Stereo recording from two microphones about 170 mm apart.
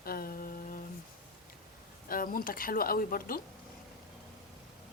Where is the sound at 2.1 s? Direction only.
55° left (ahead or behind).